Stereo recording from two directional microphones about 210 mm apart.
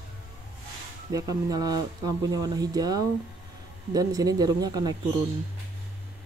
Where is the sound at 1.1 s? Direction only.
15° right (ahead or behind).